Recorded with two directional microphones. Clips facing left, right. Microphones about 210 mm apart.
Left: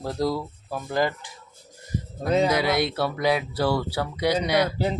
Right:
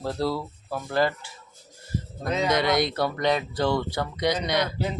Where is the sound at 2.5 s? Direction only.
5° left (ahead or behind).